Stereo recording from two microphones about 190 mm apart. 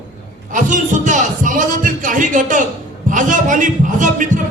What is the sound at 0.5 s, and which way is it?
A man's voice, 40° right (ahead or behind).